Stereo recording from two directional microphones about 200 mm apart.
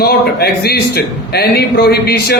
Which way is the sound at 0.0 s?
50° left (ahead or behind).